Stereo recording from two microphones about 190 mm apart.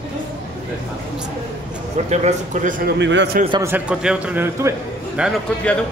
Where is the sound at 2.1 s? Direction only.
40° right (ahead or behind).